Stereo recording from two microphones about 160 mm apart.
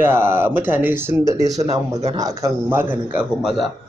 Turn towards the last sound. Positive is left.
turn(degrees=-5)  # may be behind; listen again after turning